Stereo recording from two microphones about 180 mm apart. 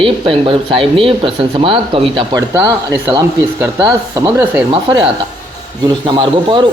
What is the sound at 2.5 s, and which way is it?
Speech, 15° right (ahead or behind).